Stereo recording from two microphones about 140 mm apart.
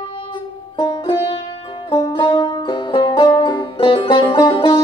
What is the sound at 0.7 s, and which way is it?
Music, 35° left (ahead or behind).